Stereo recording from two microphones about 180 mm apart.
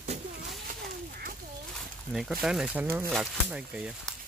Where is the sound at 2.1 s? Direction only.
Centre (ahead or behind).